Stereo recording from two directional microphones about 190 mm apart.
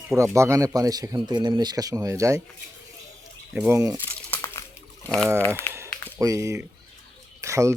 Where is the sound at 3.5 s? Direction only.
10° right (ahead or behind).